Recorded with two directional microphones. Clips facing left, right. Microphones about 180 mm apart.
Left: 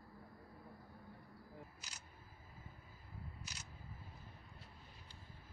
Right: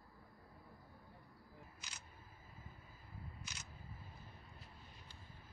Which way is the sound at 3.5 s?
35° left (ahead or behind).